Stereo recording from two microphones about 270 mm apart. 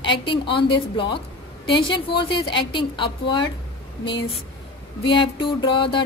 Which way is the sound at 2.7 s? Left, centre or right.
Centre.